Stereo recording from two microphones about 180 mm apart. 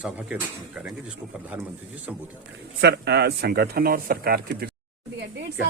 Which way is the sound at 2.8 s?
65° right (ahead or behind).